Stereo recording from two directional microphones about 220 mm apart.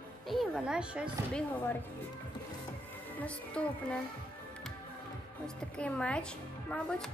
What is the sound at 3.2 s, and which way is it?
Speech, 5° left (ahead or behind).